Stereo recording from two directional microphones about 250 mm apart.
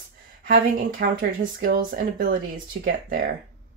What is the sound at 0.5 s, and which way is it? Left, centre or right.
Speech, right.